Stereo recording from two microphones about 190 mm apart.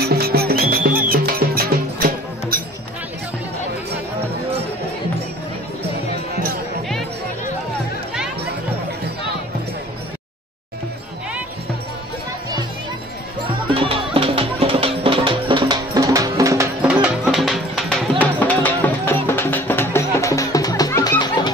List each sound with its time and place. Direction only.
0.0 s music: 55° right (ahead or behind)
13.7 s music: 30° right (ahead or behind)
16.8 s music: 5° right (ahead or behind); by 21.5 s 20° left (ahead or behind)